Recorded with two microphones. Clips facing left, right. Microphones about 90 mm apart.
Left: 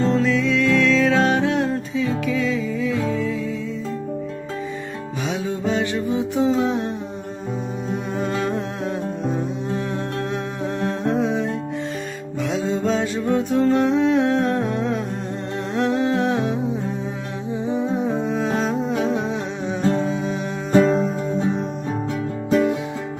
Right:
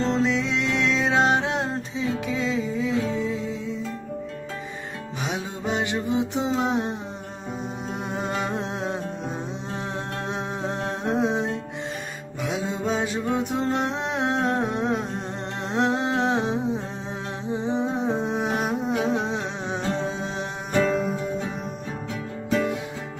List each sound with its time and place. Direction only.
0.0 s music: 25° right (ahead or behind)
5.2 s music: 20° right (ahead or behind)
8.1 s music: 20° right (ahead or behind)
10.8 s humming: 20° right (ahead or behind)
12.9 s music: 20° right (ahead or behind)
15.7 s humming: 25° right (ahead or behind)
17.5 s music: 25° right (ahead or behind)
20.7 s music: 30° left (ahead or behind)